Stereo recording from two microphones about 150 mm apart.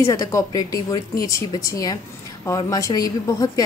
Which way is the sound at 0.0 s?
20° left (ahead or behind).